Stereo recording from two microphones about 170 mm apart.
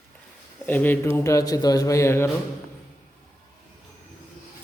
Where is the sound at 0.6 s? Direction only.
10° left (ahead or behind).